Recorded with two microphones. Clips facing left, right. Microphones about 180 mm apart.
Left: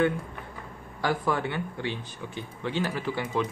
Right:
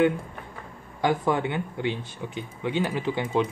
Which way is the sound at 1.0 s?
20° right (ahead or behind).